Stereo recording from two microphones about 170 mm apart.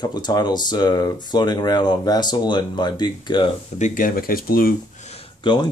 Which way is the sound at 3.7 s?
45° left (ahead or behind).